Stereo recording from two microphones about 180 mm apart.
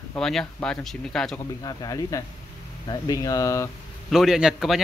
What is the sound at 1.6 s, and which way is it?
Speech, 20° left (ahead or behind).